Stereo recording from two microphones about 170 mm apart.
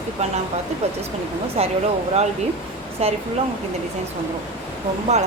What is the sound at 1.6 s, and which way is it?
Speech, 40° right (ahead or behind).